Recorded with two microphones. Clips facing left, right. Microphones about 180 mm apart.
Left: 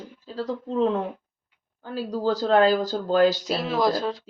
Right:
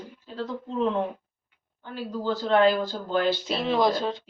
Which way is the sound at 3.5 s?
5° left (ahead or behind).